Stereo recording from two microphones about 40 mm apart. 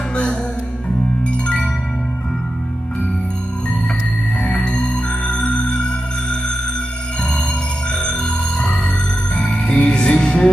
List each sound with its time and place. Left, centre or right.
0.1 s music: left
4.4 s music: left
8.0 s music: left